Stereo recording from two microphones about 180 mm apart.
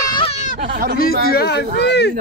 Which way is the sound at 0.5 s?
50° right (ahead or behind).